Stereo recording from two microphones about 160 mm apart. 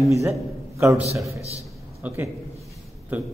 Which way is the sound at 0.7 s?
15° right (ahead or behind).